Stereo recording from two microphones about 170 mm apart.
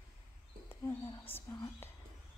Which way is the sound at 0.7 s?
15° left (ahead or behind).